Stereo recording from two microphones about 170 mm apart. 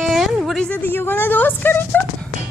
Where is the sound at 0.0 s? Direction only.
Centre (ahead or behind).